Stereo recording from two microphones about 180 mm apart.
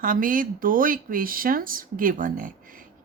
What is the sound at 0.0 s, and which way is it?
Speech, 50° right (ahead or behind).